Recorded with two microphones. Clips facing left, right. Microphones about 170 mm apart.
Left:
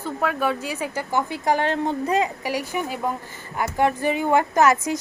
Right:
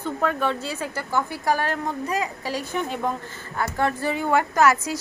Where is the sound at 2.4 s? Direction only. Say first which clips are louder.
Left 1 dB; 15° left (ahead or behind).